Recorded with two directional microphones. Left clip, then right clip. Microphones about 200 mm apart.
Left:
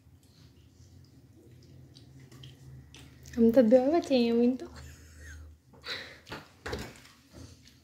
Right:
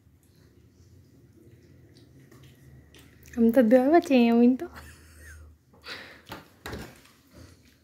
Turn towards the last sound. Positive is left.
turn(degrees=-10)  # may be behind; listen again after turning